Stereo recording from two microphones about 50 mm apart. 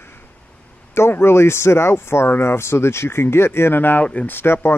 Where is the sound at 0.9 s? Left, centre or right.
Left.